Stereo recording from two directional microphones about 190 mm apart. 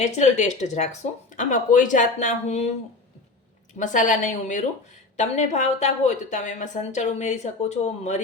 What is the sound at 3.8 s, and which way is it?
A woman's voice, 40° left (ahead or behind).